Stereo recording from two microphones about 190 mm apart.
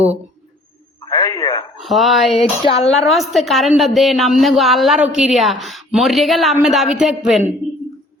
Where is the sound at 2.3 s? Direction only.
30° left (ahead or behind).